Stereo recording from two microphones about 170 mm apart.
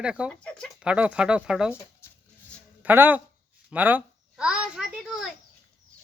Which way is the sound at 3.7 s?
10° right (ahead or behind).